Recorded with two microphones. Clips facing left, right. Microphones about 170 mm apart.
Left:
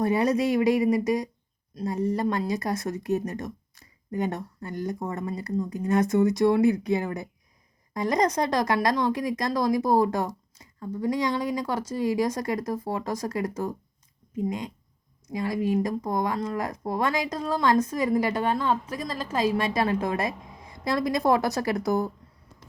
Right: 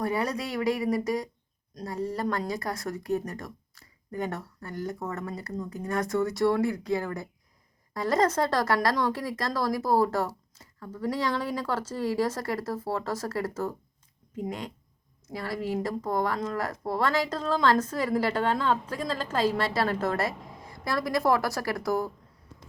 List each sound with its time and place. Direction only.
0.0 s speech: 20° left (ahead or behind)
15.3 s speech: 15° left (ahead or behind)